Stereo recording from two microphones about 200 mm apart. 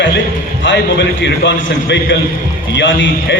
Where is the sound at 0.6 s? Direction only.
60° left (ahead or behind).